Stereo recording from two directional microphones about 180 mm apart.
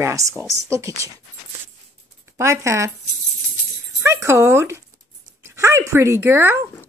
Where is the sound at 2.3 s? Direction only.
15° right (ahead or behind).